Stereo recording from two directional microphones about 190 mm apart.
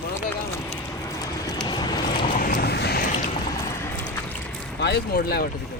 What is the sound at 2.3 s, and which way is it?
Vehicle, 45° left (ahead or behind).